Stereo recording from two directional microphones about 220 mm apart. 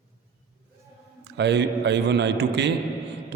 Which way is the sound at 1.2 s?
50° right (ahead or behind).